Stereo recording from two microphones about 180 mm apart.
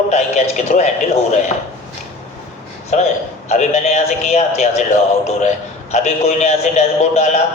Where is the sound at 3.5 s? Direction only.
40° left (ahead or behind).